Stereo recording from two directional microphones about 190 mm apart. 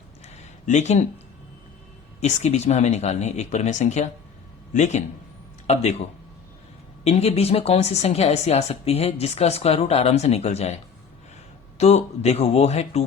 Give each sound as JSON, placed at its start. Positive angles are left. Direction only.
{"t": 0.6, "sound": "speech", "side_deg": 40}
{"t": 2.2, "sound": "a woman's voice", "side_deg": 35}
{"t": 7.0, "sound": "a woman's voice", "side_deg": 35}
{"t": 11.8, "sound": "a woman's voice", "side_deg": 35}